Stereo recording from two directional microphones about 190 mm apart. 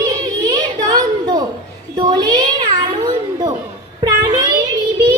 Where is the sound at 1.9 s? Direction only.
20° right (ahead or behind).